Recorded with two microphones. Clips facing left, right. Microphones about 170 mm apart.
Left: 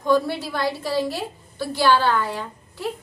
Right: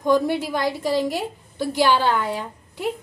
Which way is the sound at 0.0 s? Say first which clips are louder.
Right 1 dB; 15° right (ahead or behind).